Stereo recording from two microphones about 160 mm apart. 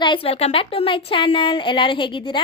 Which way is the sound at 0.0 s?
35° left (ahead or behind).